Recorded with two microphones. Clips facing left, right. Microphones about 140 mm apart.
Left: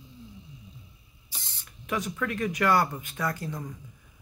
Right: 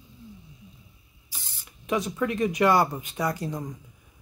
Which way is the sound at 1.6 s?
20° right (ahead or behind).